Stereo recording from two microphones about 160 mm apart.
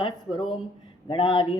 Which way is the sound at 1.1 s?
30° left (ahead or behind).